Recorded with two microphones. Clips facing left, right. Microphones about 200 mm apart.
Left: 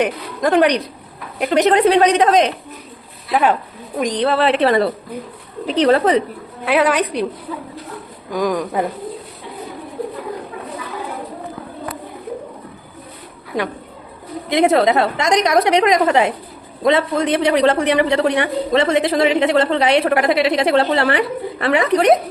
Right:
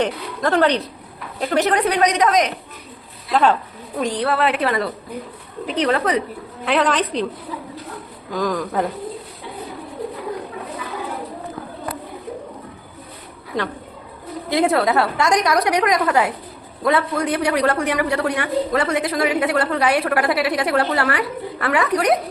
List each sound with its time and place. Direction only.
0.0 s a woman's voice: 15° left (ahead or behind)
3.3 s a woman's voice: 15° left (ahead or behind); by 6.2 s 30° left (ahead or behind)
6.7 s a woman's voice: 10° left (ahead or behind)
8.3 s a woman's voice: 15° left (ahead or behind)
14.5 s a woman's voice: 20° left (ahead or behind)